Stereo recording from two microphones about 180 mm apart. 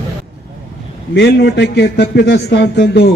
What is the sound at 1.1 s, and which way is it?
A man's voice, 70° left (ahead or behind).